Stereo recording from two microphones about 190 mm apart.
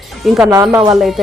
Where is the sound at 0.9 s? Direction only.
Centre (ahead or behind).